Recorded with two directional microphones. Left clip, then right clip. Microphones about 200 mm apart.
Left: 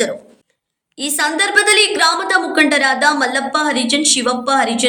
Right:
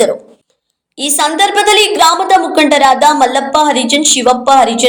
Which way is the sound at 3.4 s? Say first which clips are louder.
Right 7 dB; 25° left (ahead or behind).